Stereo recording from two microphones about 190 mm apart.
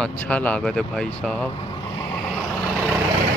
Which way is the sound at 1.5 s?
25° left (ahead or behind).